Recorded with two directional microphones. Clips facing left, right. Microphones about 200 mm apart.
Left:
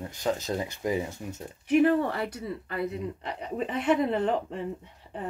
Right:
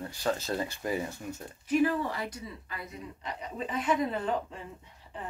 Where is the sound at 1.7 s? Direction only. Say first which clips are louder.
Left 5 dB; 60° left (ahead or behind).